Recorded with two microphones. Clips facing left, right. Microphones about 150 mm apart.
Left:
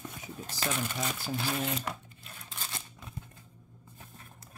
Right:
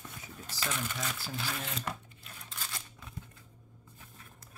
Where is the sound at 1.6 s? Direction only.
10° left (ahead or behind).